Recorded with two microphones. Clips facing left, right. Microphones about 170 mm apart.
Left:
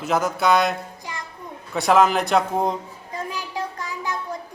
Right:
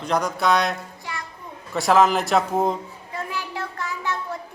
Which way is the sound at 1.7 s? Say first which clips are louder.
Even; centre (ahead or behind).